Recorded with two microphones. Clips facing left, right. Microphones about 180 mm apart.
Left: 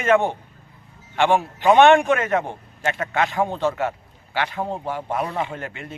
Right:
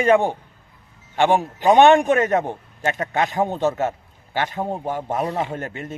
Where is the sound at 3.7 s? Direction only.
45° right (ahead or behind).